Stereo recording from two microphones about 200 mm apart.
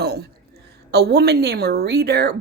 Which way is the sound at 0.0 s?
55° right (ahead or behind).